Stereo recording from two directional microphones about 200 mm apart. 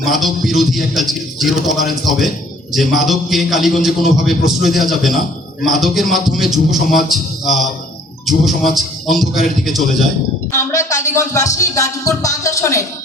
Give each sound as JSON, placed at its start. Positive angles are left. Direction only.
{"t": 0.0, "sound": "a man's voice", "side_deg": 0}
{"t": 10.5, "sound": "music", "side_deg": 15}